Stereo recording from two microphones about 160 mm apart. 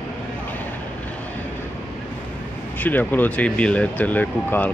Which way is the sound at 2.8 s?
10° left (ahead or behind).